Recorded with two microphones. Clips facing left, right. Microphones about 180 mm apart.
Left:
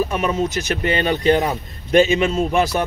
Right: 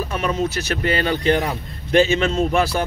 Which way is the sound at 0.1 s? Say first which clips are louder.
Left 2 dB; 15° left (ahead or behind).